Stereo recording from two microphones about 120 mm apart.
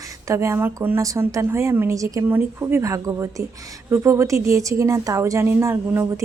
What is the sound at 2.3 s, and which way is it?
A woman's voice, 20° right (ahead or behind).